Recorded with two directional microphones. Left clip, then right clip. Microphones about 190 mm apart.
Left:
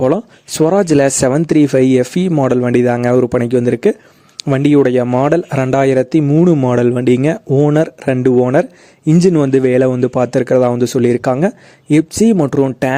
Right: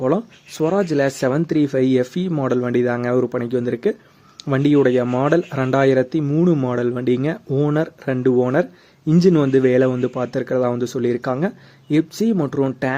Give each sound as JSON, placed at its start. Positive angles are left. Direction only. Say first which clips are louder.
{"t": 0.0, "sound": "speech", "louder": "left 6 dB", "side_deg": 45}